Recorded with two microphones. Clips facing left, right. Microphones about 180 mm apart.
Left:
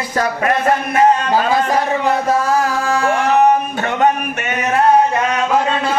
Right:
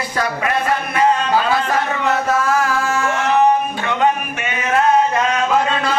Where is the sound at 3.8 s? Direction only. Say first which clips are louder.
Left 2 dB; 45° left (ahead or behind).